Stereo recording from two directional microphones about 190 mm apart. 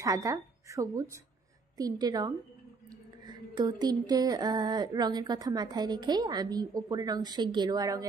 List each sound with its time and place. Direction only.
0.0 s a woman's voice: 15° right (ahead or behind)
2.9 s whispering: 20° right (ahead or behind)
4.1 s a woman's voice: 20° right (ahead or behind)